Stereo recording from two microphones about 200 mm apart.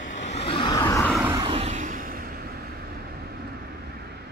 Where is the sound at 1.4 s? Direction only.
30° right (ahead or behind); by 3.5 s 50° right (ahead or behind).